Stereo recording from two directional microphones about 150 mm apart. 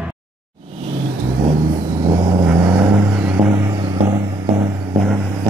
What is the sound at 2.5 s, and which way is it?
Vehicle, 15° right (ahead or behind).